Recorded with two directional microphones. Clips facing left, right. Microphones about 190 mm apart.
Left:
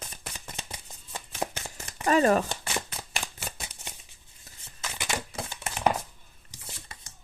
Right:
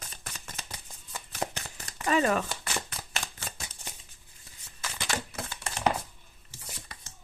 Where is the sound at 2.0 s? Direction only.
40° left (ahead or behind).